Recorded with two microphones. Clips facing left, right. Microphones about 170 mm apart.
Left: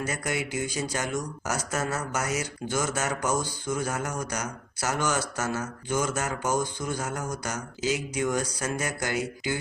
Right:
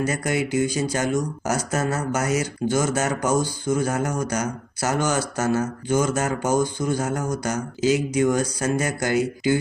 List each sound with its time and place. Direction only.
0.0 s speech: 35° right (ahead or behind)